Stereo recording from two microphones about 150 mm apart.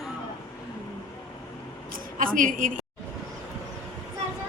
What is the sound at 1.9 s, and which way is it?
Speech, 65° right (ahead or behind).